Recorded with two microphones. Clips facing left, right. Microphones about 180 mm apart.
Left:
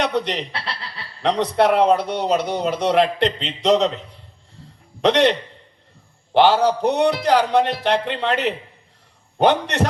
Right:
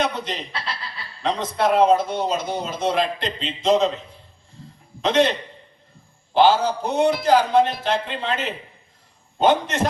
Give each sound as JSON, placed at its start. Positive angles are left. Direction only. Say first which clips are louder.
{"t": 0.0, "sound": "speech", "louder": "left 3 dB", "side_deg": 65}
{"t": 5.0, "sound": "a man's voice", "louder": "left 3 dB", "side_deg": 65}
{"t": 6.3, "sound": "a man's voice", "louder": "left 2 dB", "side_deg": 65}